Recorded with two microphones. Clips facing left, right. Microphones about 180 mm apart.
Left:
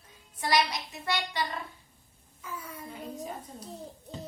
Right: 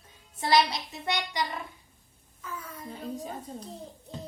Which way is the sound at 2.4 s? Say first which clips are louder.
Right 1 dB; 10° left (ahead or behind).